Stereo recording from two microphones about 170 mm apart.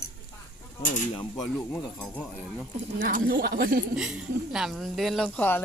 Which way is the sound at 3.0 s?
55° right (ahead or behind).